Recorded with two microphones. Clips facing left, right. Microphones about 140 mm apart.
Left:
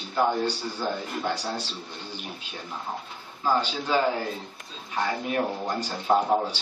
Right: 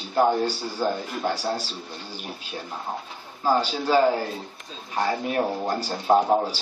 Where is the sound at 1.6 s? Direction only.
5° right (ahead or behind).